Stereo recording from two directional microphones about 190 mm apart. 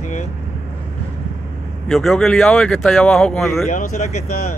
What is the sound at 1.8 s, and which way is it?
Speech, centre (ahead or behind).